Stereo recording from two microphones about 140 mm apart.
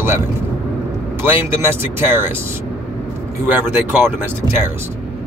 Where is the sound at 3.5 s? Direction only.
15° right (ahead or behind).